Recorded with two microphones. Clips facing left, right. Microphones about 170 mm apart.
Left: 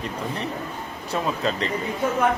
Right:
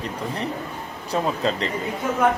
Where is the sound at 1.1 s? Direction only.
30° right (ahead or behind).